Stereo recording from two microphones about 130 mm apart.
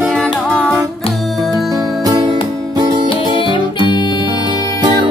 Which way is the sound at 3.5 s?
35° left (ahead or behind).